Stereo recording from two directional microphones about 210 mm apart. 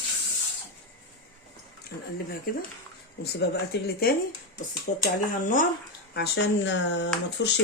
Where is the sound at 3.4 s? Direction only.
50° left (ahead or behind).